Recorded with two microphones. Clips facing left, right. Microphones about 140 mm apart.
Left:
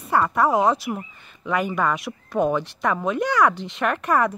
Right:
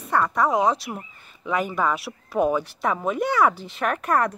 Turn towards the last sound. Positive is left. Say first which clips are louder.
# left 1 dB
turn(degrees=0)  # may be behind; listen again after turning